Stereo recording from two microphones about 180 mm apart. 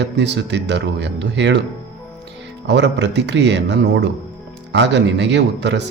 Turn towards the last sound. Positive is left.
turn(degrees=-75)  # may be behind; listen again after turning